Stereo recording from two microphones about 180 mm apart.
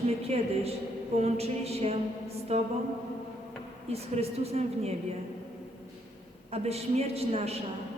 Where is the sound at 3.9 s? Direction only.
35° right (ahead or behind).